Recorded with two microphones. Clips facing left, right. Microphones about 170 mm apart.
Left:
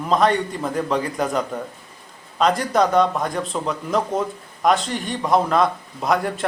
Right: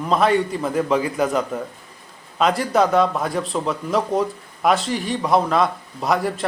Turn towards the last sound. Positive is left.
turn(degrees=0)  # may be behind; listen again after turning